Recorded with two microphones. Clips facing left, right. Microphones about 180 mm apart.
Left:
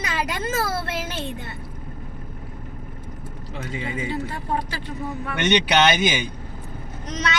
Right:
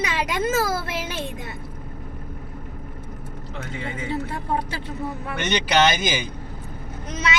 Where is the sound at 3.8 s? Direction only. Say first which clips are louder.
Left 3 dB; 15° left (ahead or behind).